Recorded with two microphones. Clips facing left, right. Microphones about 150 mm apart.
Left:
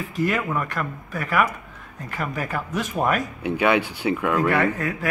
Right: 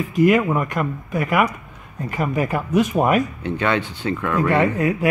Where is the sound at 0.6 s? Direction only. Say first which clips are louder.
Right 5 dB; 15° right (ahead or behind).